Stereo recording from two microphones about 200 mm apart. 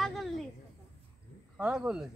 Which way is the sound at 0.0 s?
Centre (ahead or behind).